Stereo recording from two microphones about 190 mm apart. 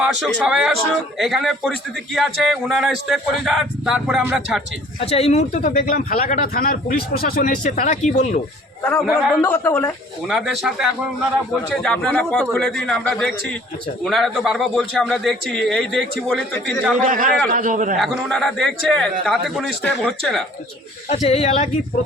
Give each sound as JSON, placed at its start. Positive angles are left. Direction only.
{"t": 0.0, "sound": "a man's voice", "side_deg": -5}
{"t": 4.9, "sound": "speech", "side_deg": 30}
{"t": 8.8, "sound": "a man's voice", "side_deg": 10}
{"t": 10.2, "sound": "a man's voice", "side_deg": 0}
{"t": 17.0, "sound": "a man's voice", "side_deg": -45}
{"t": 17.9, "sound": "a man's voice", "side_deg": 0}
{"t": 21.1, "sound": "speech", "side_deg": 30}